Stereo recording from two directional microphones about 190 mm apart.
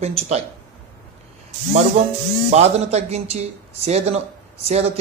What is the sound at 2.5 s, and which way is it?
Speech, 35° right (ahead or behind).